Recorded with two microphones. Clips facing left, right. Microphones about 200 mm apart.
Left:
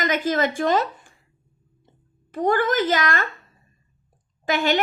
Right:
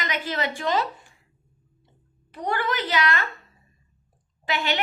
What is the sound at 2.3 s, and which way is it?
Speech, 45° left (ahead or behind).